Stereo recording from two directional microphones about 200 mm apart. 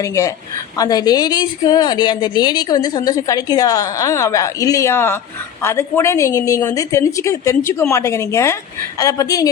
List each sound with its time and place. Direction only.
0.0 s a woman's voice: 15° left (ahead or behind)